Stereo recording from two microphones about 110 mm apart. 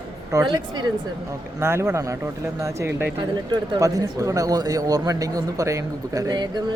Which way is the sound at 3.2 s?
45° right (ahead or behind).